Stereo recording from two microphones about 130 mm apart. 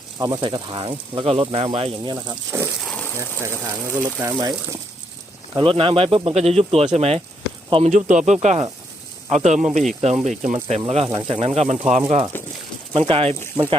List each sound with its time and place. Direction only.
0.2 s speech: 30° right (ahead or behind)
2.8 s a sound: 10° left (ahead or behind)
3.2 s speech: 20° right (ahead or behind)
5.5 s speech: 45° right (ahead or behind)
7.9 s speech: 70° right (ahead or behind)
10.8 s speech: 50° right (ahead or behind)
13.6 s speech: 20° right (ahead or behind)